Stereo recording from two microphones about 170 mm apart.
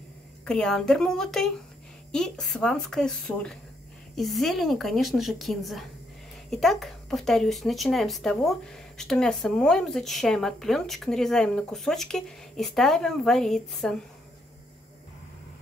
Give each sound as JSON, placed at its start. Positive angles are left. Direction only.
{"t": 0.5, "sound": "speech", "side_deg": 5}